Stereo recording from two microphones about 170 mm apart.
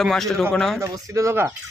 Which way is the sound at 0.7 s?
20° right (ahead or behind).